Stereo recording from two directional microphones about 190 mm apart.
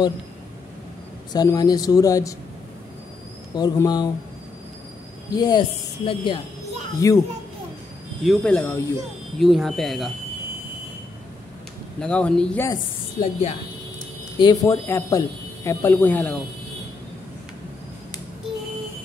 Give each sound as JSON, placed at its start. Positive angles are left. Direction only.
{"t": 1.3, "sound": "speech", "side_deg": 20}
{"t": 3.5, "sound": "speech", "side_deg": 20}
{"t": 5.3, "sound": "speech", "side_deg": 20}
{"t": 8.2, "sound": "speech", "side_deg": 5}
{"t": 12.0, "sound": "speech", "side_deg": 5}
{"t": 13.2, "sound": "speech", "side_deg": 30}
{"t": 14.4, "sound": "speech", "side_deg": 20}